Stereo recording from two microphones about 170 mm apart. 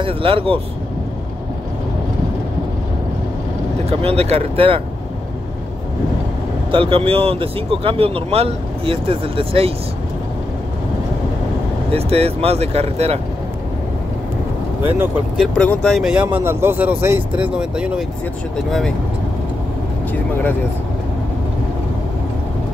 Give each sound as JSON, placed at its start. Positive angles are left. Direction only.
{"t": 0.0, "sound": "speech", "side_deg": -30}
{"t": 4.0, "sound": "speech", "side_deg": -35}
{"t": 6.7, "sound": "speech", "side_deg": -30}
{"t": 11.9, "sound": "speech", "side_deg": -35}
{"t": 15.0, "sound": "speech", "side_deg": -10}
{"t": 15.4, "sound": "speech", "side_deg": 5}